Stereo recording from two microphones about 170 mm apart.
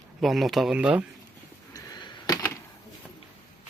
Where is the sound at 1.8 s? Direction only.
20° left (ahead or behind).